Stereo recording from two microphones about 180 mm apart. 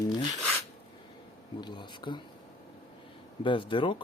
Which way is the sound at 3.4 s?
30° left (ahead or behind).